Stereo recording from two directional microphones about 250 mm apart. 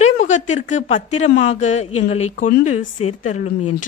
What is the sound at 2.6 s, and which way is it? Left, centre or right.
Speech, left.